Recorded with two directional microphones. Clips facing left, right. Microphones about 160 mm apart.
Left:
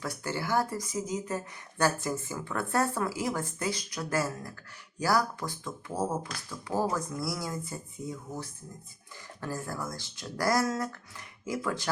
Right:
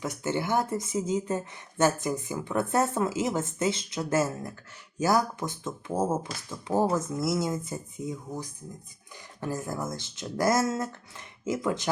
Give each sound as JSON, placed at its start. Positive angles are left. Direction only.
{"t": 0.0, "sound": "speech", "side_deg": -20}